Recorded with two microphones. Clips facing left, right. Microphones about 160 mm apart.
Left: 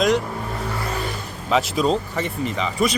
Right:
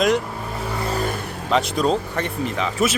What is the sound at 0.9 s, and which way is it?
Vehicle, 45° right (ahead or behind).